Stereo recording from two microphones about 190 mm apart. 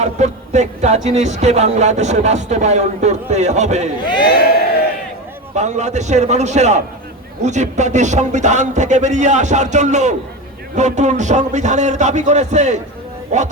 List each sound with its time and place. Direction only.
0.0 s speech: 35° right (ahead or behind)
4.0 s speech: 25° left (ahead or behind)
5.5 s speech: 40° right (ahead or behind)